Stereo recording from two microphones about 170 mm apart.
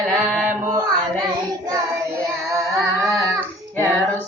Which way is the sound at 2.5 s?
20° right (ahead or behind).